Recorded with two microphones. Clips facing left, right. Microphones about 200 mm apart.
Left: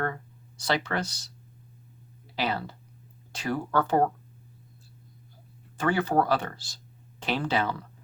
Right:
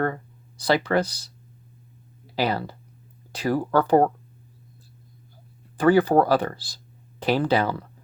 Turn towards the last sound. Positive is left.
turn(degrees=-35)  # may be behind; listen again after turning